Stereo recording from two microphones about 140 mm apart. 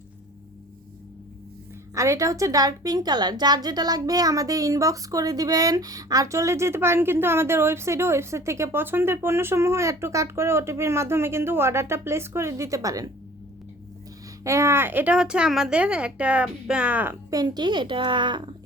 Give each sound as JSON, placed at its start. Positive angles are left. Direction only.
{"t": 2.0, "sound": "a woman's voice", "side_deg": -25}
{"t": 14.4, "sound": "speech", "side_deg": -20}
{"t": 17.3, "sound": "a woman's voice", "side_deg": -30}